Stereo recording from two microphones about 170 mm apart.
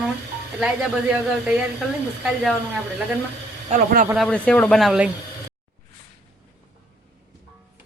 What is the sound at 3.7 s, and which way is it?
Speech, 55° right (ahead or behind).